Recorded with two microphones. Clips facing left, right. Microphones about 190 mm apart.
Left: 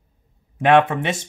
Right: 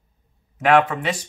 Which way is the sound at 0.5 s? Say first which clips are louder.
Left 2 dB; 25° left (ahead or behind).